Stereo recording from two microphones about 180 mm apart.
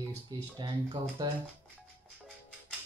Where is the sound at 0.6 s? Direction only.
25° right (ahead or behind).